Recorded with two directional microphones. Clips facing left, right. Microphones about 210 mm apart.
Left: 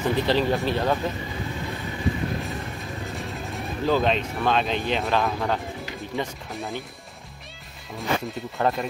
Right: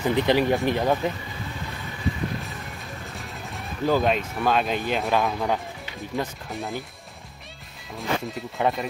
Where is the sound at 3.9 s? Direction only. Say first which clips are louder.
Even; 5° right (ahead or behind).